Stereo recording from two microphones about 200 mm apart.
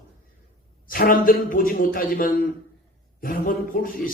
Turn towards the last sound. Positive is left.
turn(degrees=45)  # may be behind; listen again after turning